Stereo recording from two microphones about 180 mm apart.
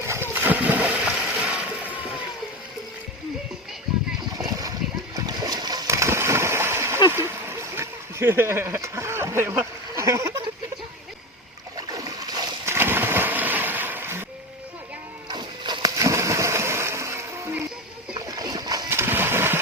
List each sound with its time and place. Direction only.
0.0 s splash: 15° right (ahead or behind)
4.4 s splash: 20° right (ahead or behind)
7.1 s a sound: 15° right (ahead or behind)
11.8 s splash: 20° right (ahead or behind)
15.3 s a sound: 25° right (ahead or behind)
18.1 s splash: 20° right (ahead or behind)